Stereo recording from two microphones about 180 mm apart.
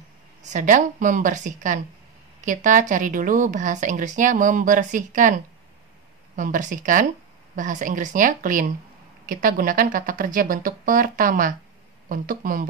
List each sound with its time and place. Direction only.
0.4 s speech: 40° right (ahead or behind)
6.3 s speech: 45° right (ahead or behind)